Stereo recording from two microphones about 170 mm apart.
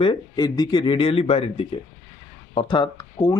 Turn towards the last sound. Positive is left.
turn(degrees=25)  # may be behind; listen again after turning